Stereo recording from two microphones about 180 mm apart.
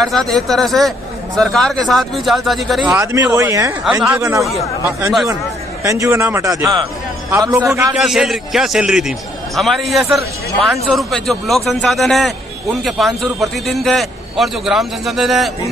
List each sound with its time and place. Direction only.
0.0 s a man's voice: centre (ahead or behind); by 4.5 s 15° right (ahead or behind)
4.8 s speech: 5° right (ahead or behind)
5.9 s a man's voice: 15° right (ahead or behind)
8.0 s speech: centre (ahead or behind)